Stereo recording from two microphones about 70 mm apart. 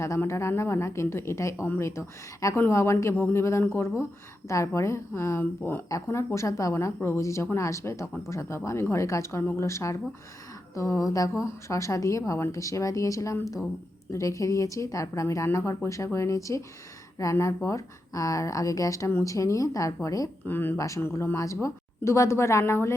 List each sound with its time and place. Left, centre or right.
0.2 s a woman's voice: left
6.1 s a woman's voice: left
20.5 s speech: left
20.7 s a woman's voice: left
21.0 s speech: left